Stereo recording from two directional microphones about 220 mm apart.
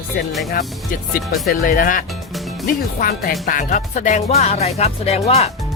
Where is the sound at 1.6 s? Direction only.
40° left (ahead or behind).